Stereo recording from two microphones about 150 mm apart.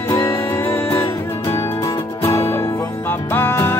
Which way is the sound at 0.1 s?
20° left (ahead or behind).